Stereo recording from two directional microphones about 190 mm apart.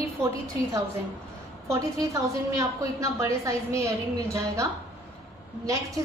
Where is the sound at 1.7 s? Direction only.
15° right (ahead or behind).